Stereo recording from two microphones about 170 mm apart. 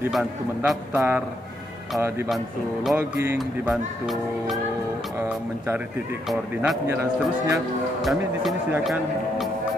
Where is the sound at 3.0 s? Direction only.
15° right (ahead or behind).